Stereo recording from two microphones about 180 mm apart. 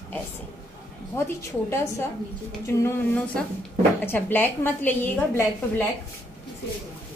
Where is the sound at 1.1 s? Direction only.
10° left (ahead or behind).